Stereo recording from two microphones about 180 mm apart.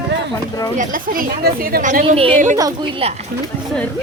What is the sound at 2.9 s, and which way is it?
Speech, 35° right (ahead or behind).